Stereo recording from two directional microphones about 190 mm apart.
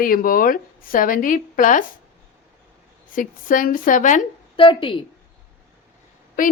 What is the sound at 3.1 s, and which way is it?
Speech, 45° left (ahead or behind).